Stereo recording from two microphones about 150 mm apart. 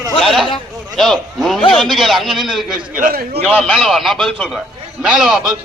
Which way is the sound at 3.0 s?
75° right (ahead or behind).